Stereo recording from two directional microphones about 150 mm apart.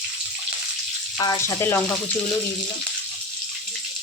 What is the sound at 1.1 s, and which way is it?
Speech, 25° left (ahead or behind).